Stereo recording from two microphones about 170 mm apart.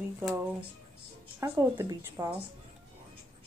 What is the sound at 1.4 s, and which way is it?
Speech, 15° right (ahead or behind).